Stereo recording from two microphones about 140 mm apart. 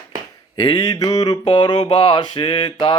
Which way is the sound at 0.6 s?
25° left (ahead or behind).